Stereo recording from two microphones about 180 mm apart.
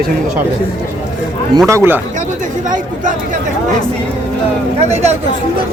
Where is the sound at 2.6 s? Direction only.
45° right (ahead or behind).